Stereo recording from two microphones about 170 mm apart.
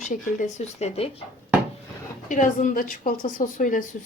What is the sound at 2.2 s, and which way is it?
A woman's voice, 50° left (ahead or behind).